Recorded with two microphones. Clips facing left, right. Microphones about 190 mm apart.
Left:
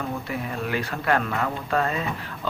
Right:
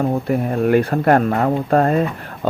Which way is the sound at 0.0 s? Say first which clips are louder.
Right 11 dB; 45° right (ahead or behind).